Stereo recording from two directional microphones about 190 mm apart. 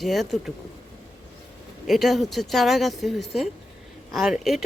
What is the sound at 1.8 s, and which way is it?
Speech, centre (ahead or behind).